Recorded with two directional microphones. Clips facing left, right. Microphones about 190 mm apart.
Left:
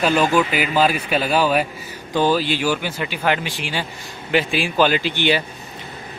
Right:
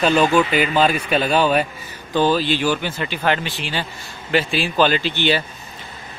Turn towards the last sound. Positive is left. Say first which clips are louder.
# even
turn(degrees=15)  # may be behind; listen again after turning